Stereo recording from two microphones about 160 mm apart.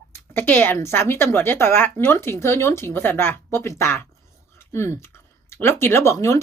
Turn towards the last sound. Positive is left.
turn(degrees=20)  # may be behind; listen again after turning